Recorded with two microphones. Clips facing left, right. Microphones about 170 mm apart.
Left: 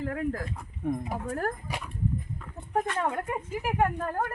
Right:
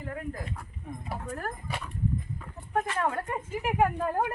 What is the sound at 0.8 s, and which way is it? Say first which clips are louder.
Speech: left 12 dB; 75° left (ahead or behind).